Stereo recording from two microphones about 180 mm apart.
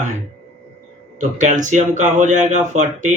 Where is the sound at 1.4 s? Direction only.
45° right (ahead or behind).